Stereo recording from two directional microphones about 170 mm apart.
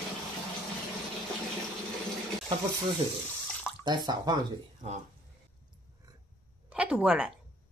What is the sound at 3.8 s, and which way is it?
Speech, 25° right (ahead or behind).